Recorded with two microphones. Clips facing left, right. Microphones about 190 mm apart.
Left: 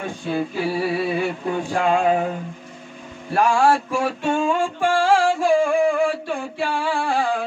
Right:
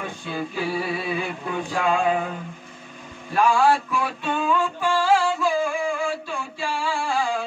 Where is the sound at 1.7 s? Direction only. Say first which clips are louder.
Left 3 dB; 45° left (ahead or behind).